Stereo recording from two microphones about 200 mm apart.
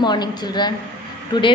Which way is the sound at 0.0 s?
20° left (ahead or behind).